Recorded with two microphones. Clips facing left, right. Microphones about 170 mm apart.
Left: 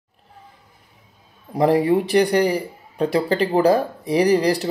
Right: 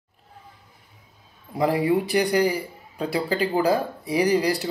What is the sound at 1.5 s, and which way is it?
Speech, 40° left (ahead or behind).